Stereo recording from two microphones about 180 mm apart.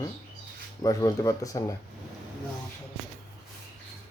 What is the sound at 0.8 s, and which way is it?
Speech, 20° left (ahead or behind).